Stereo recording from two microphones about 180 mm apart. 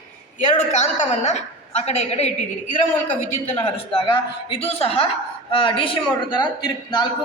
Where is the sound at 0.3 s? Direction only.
40° left (ahead or behind).